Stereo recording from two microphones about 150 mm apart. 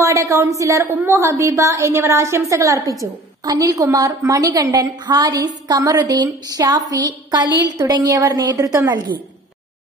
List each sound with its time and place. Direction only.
0.0 s a woman's voice: 20° right (ahead or behind)